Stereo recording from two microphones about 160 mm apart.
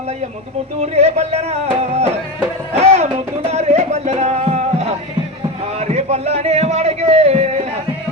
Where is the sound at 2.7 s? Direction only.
40° right (ahead or behind).